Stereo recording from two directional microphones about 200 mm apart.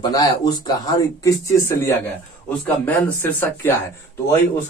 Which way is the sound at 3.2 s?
10° left (ahead or behind).